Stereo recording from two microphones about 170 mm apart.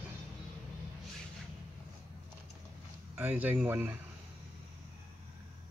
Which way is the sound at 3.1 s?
10° right (ahead or behind).